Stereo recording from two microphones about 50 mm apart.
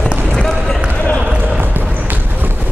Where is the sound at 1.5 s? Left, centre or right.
Right.